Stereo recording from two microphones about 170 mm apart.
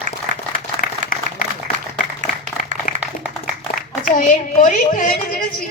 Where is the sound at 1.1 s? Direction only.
55° left (ahead or behind).